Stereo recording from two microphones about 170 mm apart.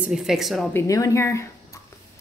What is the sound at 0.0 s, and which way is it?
Speech, 5° right (ahead or behind).